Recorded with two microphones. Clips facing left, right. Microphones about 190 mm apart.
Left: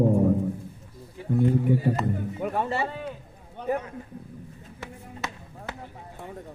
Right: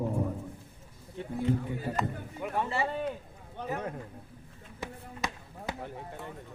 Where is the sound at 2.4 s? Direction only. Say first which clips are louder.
Left 2 dB; 35° left (ahead or behind).